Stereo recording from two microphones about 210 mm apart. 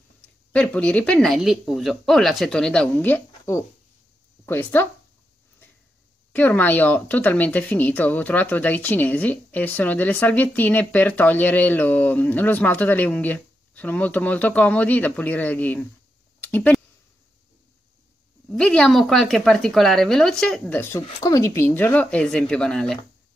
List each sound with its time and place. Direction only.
0.5 s a woman's voice: 5° left (ahead or behind)
6.3 s speech: 10° left (ahead or behind)
18.5 s a woman's voice: 5° left (ahead or behind)